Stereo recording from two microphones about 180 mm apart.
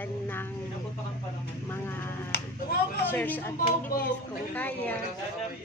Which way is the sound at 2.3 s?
65° left (ahead or behind).